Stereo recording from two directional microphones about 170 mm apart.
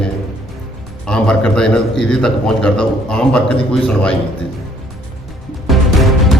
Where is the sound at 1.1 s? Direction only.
5° left (ahead or behind).